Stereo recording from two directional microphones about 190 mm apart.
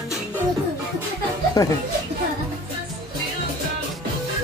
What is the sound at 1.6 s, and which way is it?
Speech, 20° left (ahead or behind).